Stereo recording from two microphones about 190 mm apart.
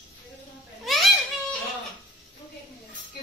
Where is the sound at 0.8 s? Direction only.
Centre (ahead or behind).